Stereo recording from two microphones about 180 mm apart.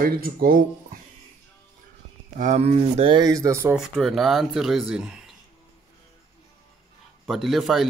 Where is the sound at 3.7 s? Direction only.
Centre (ahead or behind).